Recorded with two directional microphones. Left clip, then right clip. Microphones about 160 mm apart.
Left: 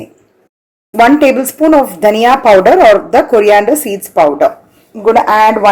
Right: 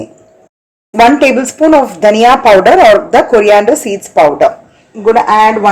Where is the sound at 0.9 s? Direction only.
10° left (ahead or behind).